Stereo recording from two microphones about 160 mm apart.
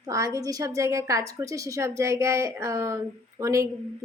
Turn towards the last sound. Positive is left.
turn(degrees=-20)  # may be behind; listen again after turning